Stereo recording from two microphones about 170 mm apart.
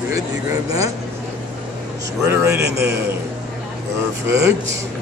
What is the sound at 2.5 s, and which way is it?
Speech, 70° right (ahead or behind).